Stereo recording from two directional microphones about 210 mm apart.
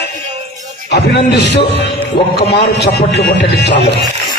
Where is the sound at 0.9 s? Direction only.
50° left (ahead or behind).